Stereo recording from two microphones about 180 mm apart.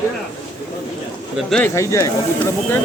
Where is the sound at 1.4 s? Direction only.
5° left (ahead or behind).